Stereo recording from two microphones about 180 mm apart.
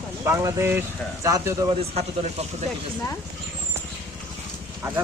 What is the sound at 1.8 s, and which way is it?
Speech, 35° right (ahead or behind).